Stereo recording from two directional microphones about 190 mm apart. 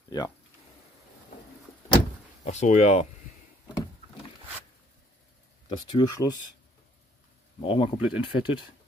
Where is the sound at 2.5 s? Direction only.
35° left (ahead or behind).